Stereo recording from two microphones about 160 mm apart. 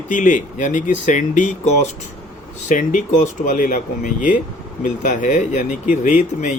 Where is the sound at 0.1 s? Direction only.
55° left (ahead or behind).